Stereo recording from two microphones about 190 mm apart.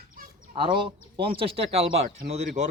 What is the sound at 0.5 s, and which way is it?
Speech, 25° right (ahead or behind).